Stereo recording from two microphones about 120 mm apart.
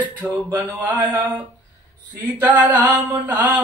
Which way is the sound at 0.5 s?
15° right (ahead or behind).